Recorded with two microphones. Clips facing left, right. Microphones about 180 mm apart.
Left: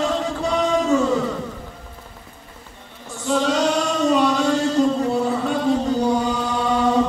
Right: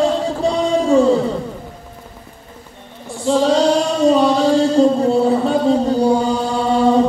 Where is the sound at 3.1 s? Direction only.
30° right (ahead or behind).